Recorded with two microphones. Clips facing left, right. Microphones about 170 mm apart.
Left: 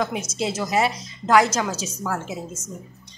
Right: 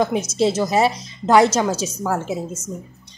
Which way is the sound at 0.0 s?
30° right (ahead or behind).